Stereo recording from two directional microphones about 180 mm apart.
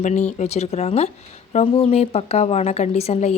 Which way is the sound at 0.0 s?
40° left (ahead or behind).